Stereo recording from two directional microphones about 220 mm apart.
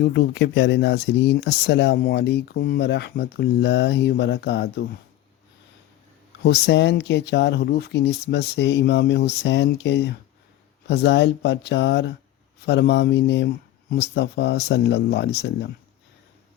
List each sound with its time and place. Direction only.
0.0 s speech: 50° left (ahead or behind)
6.4 s speech: 50° left (ahead or behind)